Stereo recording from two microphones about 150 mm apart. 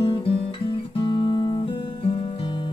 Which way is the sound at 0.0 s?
40° left (ahead or behind).